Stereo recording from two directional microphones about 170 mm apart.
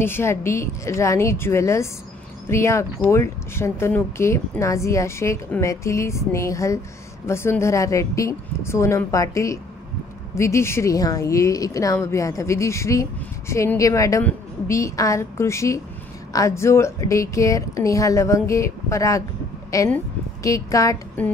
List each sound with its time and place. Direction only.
0.0 s a woman's voice: 15° left (ahead or behind)